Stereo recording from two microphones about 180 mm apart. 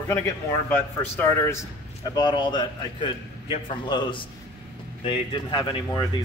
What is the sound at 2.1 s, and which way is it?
A man's voice, 25° left (ahead or behind).